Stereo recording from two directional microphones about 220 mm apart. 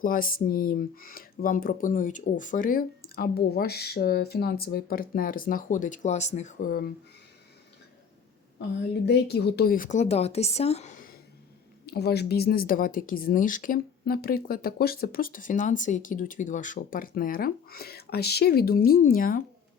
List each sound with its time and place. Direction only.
0.0 s speech: 40° left (ahead or behind)
9.0 s speech: 50° left (ahead or behind)
11.9 s speech: 50° left (ahead or behind)